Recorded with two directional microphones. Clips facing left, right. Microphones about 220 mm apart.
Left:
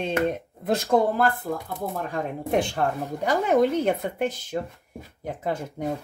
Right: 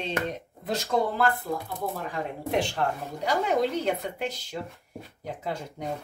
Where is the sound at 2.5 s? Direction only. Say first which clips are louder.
Left 3 dB; 50° left (ahead or behind).